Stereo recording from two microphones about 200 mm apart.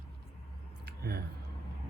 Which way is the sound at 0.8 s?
50° right (ahead or behind).